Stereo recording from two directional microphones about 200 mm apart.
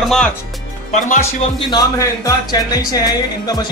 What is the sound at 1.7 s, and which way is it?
Speech, 15° left (ahead or behind).